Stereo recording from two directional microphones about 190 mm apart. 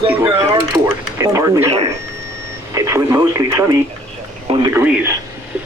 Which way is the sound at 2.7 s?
15° right (ahead or behind).